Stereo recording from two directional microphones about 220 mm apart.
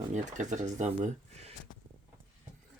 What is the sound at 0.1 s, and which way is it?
Speech, 35° right (ahead or behind).